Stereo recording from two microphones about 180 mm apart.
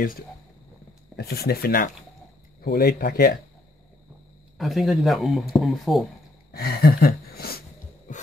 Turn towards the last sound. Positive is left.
turn(degrees=60)  # may be behind; listen again after turning